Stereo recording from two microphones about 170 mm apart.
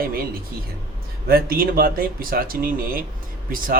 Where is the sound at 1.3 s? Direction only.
60° right (ahead or behind).